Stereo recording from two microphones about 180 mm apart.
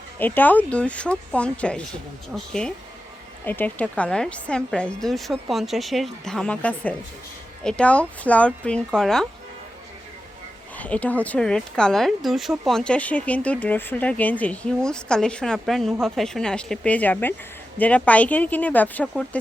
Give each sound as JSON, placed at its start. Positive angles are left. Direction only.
{"t": 0.2, "sound": "a woman's voice", "side_deg": 10}
{"t": 10.8, "sound": "a woman's voice", "side_deg": 10}